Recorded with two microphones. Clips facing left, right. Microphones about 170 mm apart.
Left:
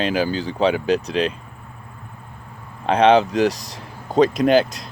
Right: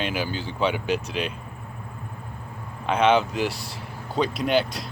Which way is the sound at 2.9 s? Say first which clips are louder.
Left 5 dB; 35° left (ahead or behind).